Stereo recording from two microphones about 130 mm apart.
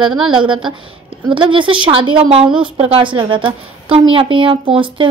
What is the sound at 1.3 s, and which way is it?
A woman's voice, 40° right (ahead or behind).